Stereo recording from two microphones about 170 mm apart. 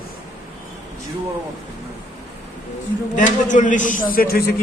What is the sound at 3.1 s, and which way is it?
A man's voice, 45° left (ahead or behind).